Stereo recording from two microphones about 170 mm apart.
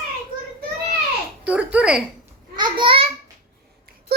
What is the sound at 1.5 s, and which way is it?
Speech, 5° right (ahead or behind).